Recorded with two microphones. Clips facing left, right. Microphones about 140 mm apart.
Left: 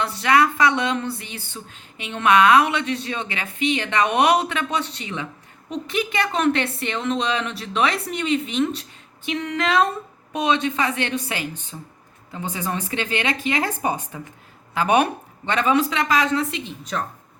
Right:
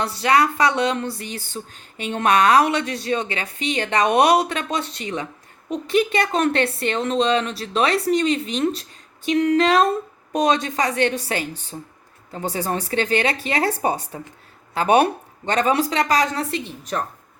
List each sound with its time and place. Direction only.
0.0 s speech: 30° right (ahead or behind)